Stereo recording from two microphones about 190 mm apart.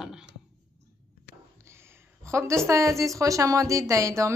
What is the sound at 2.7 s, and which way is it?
Speech, 15° right (ahead or behind).